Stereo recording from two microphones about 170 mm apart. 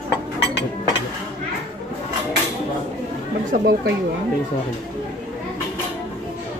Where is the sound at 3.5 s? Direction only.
65° right (ahead or behind).